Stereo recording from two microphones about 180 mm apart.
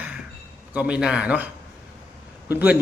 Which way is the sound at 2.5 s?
10° right (ahead or behind).